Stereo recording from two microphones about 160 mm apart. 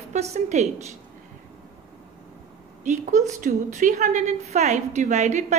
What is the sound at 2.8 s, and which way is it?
A woman's voice, 50° right (ahead or behind).